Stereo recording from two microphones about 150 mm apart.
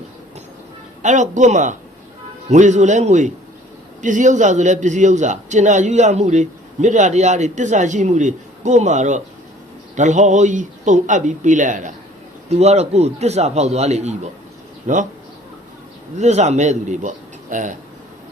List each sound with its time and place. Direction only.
1.0 s a man's voice: 55° right (ahead or behind)
16.1 s a man's voice: 50° right (ahead or behind)